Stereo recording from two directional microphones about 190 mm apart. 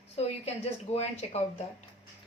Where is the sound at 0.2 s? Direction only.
35° left (ahead or behind).